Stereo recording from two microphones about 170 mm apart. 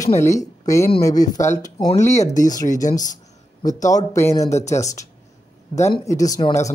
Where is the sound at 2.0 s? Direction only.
45° left (ahead or behind).